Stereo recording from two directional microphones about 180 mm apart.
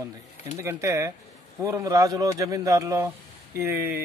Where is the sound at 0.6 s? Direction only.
15° right (ahead or behind).